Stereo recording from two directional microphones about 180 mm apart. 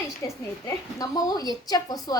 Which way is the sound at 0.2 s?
20° left (ahead or behind).